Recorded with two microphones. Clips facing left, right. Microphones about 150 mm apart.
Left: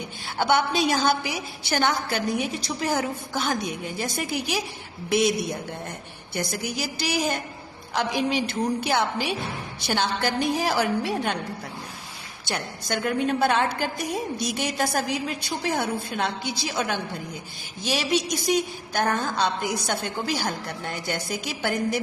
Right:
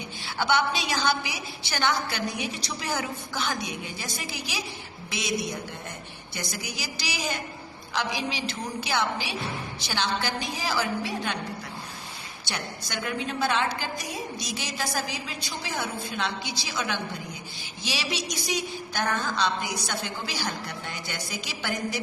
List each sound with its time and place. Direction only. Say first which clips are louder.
0.3 s a woman's voice: left 3 dB; 50° left (ahead or behind)
6.3 s a woman's voice: left 7 dB; 55° left (ahead or behind)
12.5 s a woman's voice: left 6 dB; 45° left (ahead or behind)